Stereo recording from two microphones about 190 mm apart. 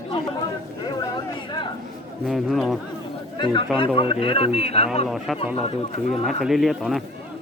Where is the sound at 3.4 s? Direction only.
25° left (ahead or behind).